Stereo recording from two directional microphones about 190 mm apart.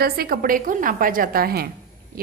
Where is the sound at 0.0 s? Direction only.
50° right (ahead or behind).